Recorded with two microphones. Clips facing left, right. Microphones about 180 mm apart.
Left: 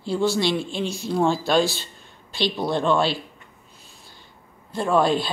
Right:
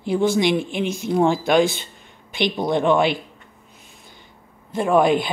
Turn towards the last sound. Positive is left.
turn(degrees=-20)  # may be behind; listen again after turning